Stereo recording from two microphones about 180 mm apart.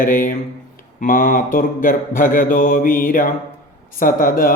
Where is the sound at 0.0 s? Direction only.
50° left (ahead or behind).